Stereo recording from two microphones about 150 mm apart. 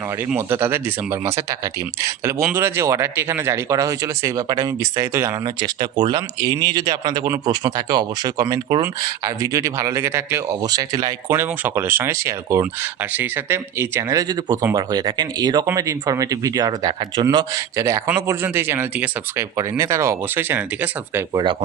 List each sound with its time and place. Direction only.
0.3 s speech: 15° right (ahead or behind)